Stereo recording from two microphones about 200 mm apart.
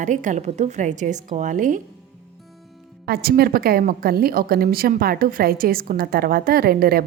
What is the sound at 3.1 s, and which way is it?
A woman's voice, 50° right (ahead or behind).